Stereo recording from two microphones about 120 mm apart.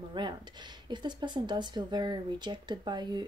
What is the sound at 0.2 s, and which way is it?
Speech, 40° right (ahead or behind).